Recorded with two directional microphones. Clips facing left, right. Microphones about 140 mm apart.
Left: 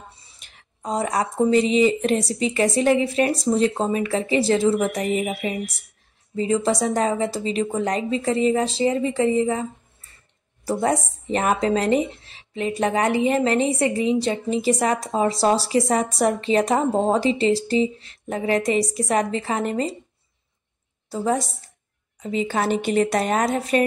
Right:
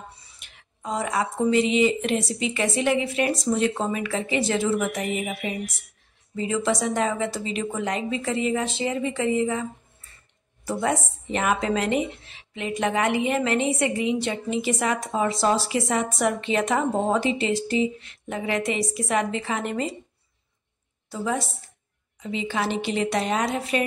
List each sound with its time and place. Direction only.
0.4 s speech: 35° left (ahead or behind)
21.1 s a woman's voice: 40° left (ahead or behind)